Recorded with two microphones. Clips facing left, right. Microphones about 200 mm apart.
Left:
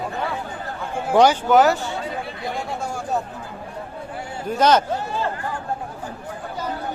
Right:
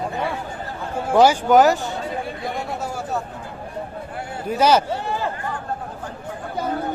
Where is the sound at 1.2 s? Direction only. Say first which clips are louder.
Right 2 dB; 10° right (ahead or behind).